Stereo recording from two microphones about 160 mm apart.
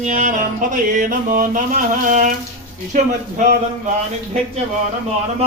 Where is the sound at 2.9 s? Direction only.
55° right (ahead or behind).